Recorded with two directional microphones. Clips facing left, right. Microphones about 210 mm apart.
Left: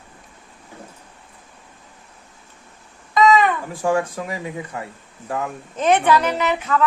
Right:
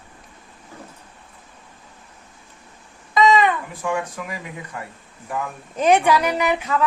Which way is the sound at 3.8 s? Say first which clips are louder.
Left 5 dB; 30° left (ahead or behind).